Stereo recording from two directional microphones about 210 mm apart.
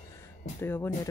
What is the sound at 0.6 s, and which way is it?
Speech, 10° left (ahead or behind).